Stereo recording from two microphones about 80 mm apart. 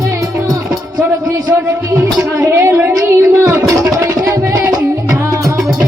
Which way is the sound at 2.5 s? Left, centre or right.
Right.